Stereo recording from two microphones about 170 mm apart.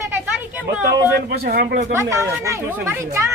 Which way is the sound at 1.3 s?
60° right (ahead or behind).